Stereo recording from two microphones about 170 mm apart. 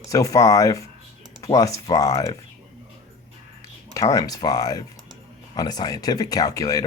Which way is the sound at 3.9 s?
20° left (ahead or behind).